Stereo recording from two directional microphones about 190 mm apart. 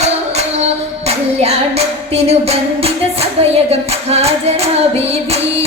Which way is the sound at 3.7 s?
35° right (ahead or behind).